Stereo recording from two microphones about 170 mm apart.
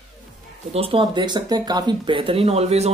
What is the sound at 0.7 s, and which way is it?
Speech, 30° right (ahead or behind).